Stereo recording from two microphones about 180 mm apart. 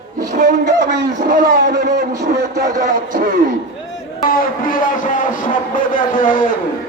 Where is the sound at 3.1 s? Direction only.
50° right (ahead or behind).